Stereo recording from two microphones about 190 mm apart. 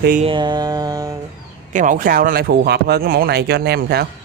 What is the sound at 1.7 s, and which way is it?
Speech, 40° right (ahead or behind).